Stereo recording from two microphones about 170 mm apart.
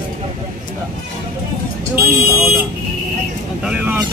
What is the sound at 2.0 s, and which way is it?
Buzzer, 15° right (ahead or behind).